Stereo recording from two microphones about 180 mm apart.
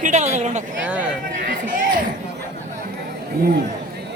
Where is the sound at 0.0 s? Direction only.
40° right (ahead or behind).